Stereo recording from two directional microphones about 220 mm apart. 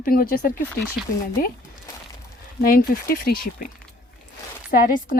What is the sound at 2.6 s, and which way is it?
Speech, 45° left (ahead or behind).